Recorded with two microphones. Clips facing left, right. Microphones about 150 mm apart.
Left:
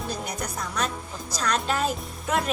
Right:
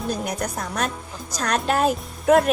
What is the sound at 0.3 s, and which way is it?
A woman's voice, 50° right (ahead or behind).